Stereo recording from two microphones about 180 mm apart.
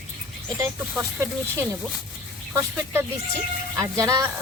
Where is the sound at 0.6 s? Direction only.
15° right (ahead or behind).